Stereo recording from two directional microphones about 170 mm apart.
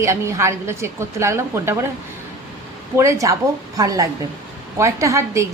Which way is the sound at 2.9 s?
20° right (ahead or behind).